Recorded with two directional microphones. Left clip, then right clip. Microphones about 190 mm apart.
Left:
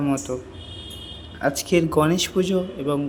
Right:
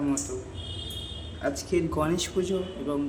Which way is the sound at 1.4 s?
50° left (ahead or behind).